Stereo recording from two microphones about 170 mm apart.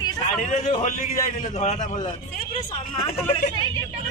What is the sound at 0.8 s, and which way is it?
A man's voice, 45° left (ahead or behind).